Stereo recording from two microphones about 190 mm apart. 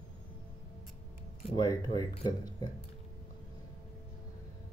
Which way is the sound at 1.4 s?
25° left (ahead or behind).